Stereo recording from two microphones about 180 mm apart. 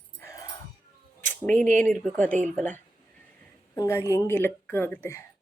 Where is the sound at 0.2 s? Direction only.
15° left (ahead or behind).